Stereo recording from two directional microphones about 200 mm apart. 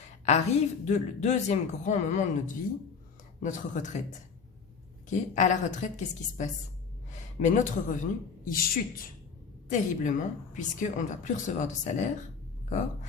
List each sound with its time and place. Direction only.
0.3 s speech: 35° left (ahead or behind)
3.4 s speech: 40° left (ahead or behind)
5.0 s speech: 35° left (ahead or behind)